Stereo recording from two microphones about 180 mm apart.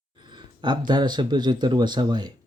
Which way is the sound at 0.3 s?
25° right (ahead or behind).